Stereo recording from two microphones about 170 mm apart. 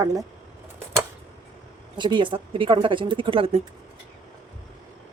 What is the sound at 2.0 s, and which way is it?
Speech, 25° right (ahead or behind).